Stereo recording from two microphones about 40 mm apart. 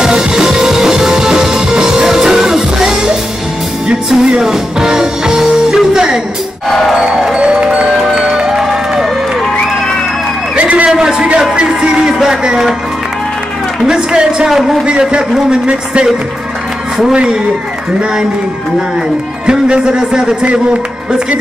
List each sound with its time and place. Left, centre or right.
0.0 s music: centre
7.3 s music: right
10.5 s a sound: right
10.9 s a sound: centre
11.5 s music: right
13.8 s music: centre
14.5 s speech: centre
14.9 s speech: right
19.4 s speech: right